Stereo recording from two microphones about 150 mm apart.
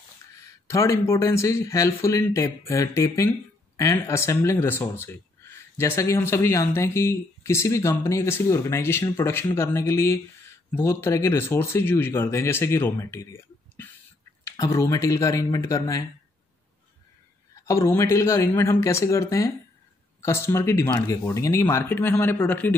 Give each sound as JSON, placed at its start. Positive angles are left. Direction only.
{"t": 0.4, "sound": "speech", "side_deg": 20}
{"t": 17.6, "sound": "speech", "side_deg": 20}